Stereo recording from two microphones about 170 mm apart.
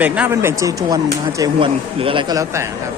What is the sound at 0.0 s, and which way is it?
Speech, 10° right (ahead or behind).